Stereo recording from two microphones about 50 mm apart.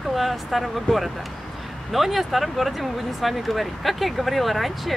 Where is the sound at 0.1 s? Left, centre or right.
Centre.